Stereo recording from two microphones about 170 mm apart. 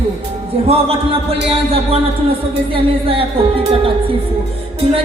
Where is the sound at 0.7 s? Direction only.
35° right (ahead or behind).